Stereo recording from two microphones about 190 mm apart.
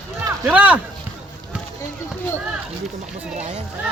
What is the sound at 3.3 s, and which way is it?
Speech, 35° right (ahead or behind).